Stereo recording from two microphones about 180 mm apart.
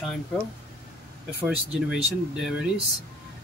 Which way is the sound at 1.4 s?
5° right (ahead or behind).